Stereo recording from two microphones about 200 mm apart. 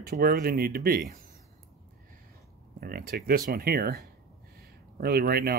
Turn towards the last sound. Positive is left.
turn(degrees=-50)  # may be behind; listen again after turning